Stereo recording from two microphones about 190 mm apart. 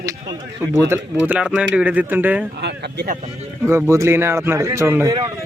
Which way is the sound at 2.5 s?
60° right (ahead or behind).